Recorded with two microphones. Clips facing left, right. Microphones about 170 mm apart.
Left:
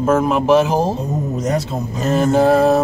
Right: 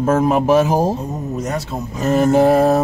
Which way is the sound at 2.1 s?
15° right (ahead or behind).